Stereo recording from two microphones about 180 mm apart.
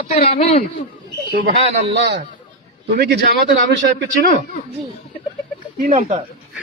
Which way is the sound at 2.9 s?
65° right (ahead or behind).